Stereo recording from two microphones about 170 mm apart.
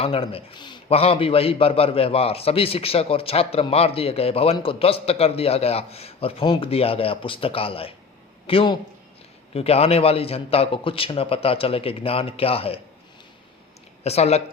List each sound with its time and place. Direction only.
0.0 s a man's voice: 35° left (ahead or behind)
14.0 s a man's voice: 40° left (ahead or behind)